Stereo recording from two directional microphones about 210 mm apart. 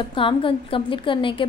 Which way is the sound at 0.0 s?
25° left (ahead or behind).